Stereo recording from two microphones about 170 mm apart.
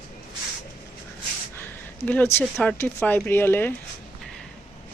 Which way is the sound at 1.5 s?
10° left (ahead or behind).